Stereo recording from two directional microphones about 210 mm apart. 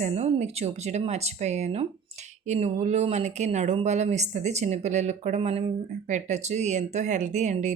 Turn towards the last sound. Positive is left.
turn(degrees=-35)  # may be behind; listen again after turning